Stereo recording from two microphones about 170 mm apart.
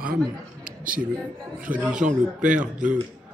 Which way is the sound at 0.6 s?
55° right (ahead or behind).